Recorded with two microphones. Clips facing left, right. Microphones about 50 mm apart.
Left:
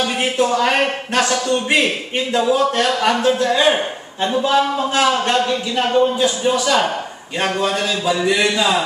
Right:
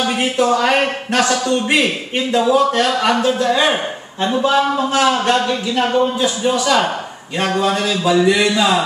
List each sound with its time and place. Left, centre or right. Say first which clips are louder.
0.0 s a man's voice: right 1 dB; centre
4.7 s a man's voice: right 1 dB; centre
5.5 s speech: right 1 dB; centre
6.2 s speech: right 1 dB; centre